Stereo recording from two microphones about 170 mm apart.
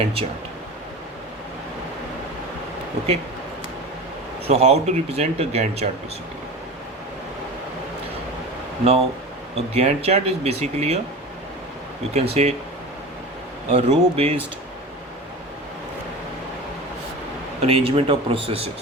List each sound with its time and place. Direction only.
4.4 s speech: 40° right (ahead or behind)
8.8 s speech: 35° right (ahead or behind)
12.1 s speech: 35° right (ahead or behind)
13.7 s speech: 40° right (ahead or behind)
17.7 s speech: 35° right (ahead or behind)